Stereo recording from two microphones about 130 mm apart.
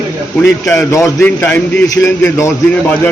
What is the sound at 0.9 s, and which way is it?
Speech, 25° left (ahead or behind).